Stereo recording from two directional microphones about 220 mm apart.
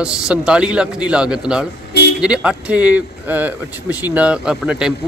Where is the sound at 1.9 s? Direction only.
50° left (ahead or behind).